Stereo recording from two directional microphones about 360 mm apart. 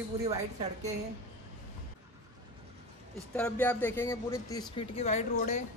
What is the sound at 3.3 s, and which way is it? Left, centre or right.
A woman's voice, centre.